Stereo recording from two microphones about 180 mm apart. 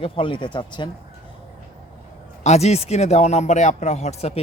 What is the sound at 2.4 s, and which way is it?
Speech, 35° left (ahead or behind).